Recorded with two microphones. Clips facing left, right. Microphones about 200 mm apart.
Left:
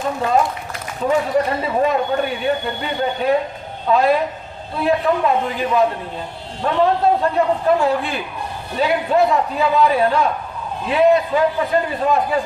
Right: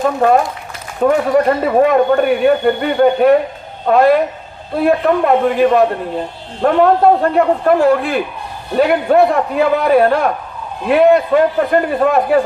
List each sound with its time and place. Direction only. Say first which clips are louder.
1.0 s speech: right 6 dB; 60° right (ahead or behind)